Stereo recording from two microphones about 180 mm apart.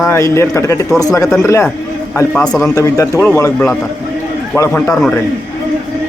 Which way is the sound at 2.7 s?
20° left (ahead or behind).